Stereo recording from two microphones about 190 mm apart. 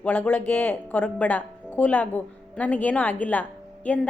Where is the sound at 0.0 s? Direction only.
10° left (ahead or behind).